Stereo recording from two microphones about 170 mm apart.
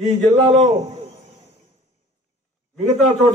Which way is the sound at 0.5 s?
40° right (ahead or behind).